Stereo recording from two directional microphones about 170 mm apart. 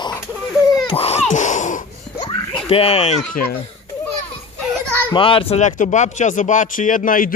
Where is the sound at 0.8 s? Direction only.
35° left (ahead or behind).